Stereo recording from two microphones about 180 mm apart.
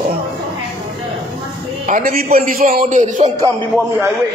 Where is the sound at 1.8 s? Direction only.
50° right (ahead or behind).